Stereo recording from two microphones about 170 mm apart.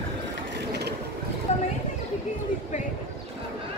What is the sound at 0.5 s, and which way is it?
Mechanisms, 80° right.